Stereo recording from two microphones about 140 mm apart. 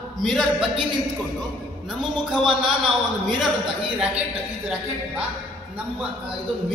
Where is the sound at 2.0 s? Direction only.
Centre (ahead or behind).